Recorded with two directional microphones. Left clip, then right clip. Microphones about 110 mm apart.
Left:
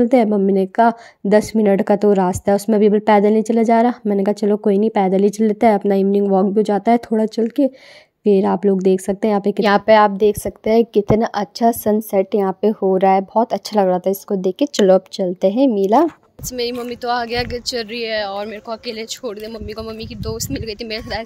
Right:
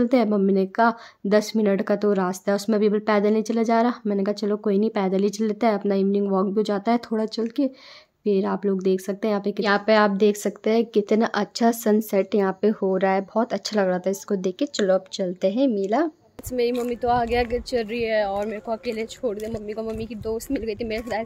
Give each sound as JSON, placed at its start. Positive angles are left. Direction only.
{"t": 0.0, "sound": "a woman's voice", "side_deg": 35}
{"t": 8.2, "sound": "a woman's voice", "side_deg": 50}
{"t": 9.6, "sound": "a woman's voice", "side_deg": 75}
{"t": 10.1, "sound": "a woman's voice", "side_deg": 35}
{"t": 14.6, "sound": "a woman's voice", "side_deg": 65}
{"t": 15.1, "sound": "a woman's voice", "side_deg": 40}
{"t": 17.0, "sound": "speech", "side_deg": 0}